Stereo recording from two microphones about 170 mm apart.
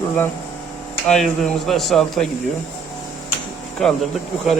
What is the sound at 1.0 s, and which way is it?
Speech, 5° left (ahead or behind).